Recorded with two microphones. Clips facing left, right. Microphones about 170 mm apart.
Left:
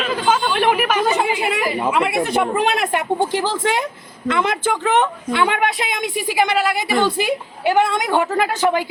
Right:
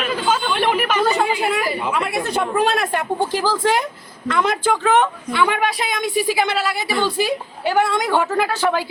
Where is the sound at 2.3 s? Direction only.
20° left (ahead or behind).